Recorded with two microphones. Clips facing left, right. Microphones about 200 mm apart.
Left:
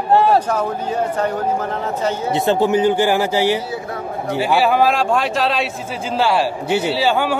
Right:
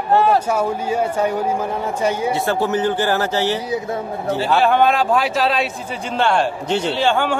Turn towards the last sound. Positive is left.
turn(degrees=5)  # may be behind; listen again after turning